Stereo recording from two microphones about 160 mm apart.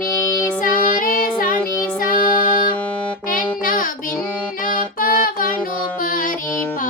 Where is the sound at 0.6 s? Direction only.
60° left (ahead or behind).